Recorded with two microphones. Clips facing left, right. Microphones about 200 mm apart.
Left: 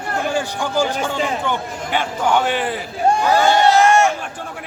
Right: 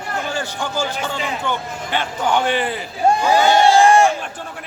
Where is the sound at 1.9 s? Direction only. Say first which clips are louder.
Left 1 dB; 5° left (ahead or behind).